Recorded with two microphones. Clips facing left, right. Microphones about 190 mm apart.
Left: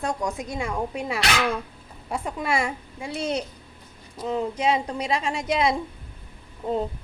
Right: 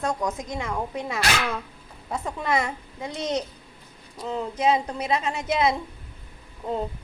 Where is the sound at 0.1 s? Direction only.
Centre (ahead or behind).